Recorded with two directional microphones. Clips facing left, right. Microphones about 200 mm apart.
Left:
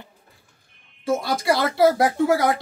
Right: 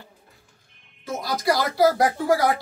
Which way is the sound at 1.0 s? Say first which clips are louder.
Left 3 dB; 25° left (ahead or behind).